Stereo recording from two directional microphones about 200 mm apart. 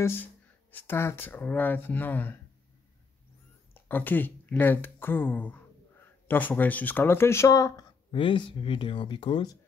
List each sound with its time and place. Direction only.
0.0 s speech: 10° left (ahead or behind)
3.7 s speech: 10° left (ahead or behind)